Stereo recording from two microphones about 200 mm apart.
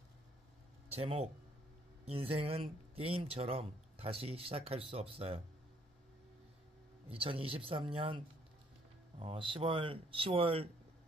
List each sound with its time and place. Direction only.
0.8 s speech: 30° right (ahead or behind)
7.1 s speech: 25° right (ahead or behind)
9.2 s speech: 25° right (ahead or behind)